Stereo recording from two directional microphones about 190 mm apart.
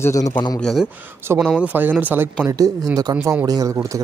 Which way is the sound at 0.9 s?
10° right (ahead or behind).